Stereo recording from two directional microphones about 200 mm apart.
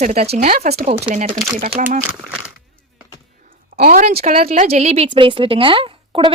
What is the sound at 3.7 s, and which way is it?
A woman's voice, 45° right (ahead or behind).